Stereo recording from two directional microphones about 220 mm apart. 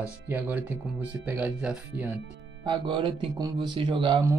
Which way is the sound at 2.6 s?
20° right (ahead or behind).